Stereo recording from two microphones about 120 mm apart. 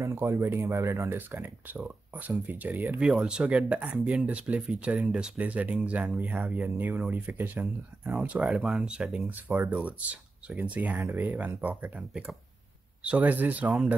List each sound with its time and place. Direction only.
0.0 s speech: 20° right (ahead or behind)